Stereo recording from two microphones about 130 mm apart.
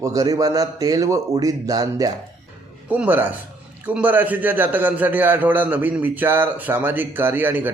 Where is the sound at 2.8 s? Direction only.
10° right (ahead or behind).